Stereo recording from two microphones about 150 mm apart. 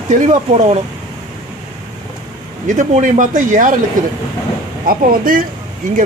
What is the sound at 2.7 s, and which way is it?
Speech, 55° right (ahead or behind).